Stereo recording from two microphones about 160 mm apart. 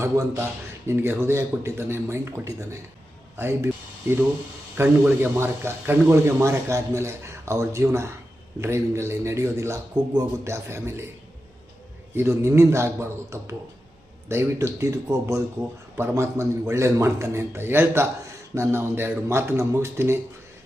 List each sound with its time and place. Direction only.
0.0 s speech: 15° right (ahead or behind)
4.8 s speech: 15° right (ahead or behind)
12.1 s speech: 15° right (ahead or behind)